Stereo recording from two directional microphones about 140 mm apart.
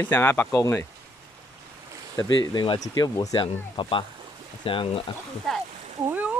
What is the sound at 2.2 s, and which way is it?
Speech, 35° left (ahead or behind).